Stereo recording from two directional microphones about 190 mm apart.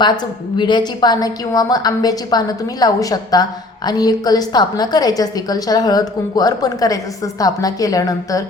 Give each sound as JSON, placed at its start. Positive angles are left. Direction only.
{"t": 0.5, "sound": "a woman's voice", "side_deg": 25}